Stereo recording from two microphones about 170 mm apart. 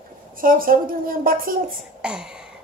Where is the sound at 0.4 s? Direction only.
55° right (ahead or behind).